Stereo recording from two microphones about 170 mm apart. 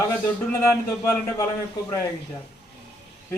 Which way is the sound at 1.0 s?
15° left (ahead or behind).